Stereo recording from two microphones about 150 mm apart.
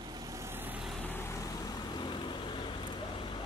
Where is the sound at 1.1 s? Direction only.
15° left (ahead or behind).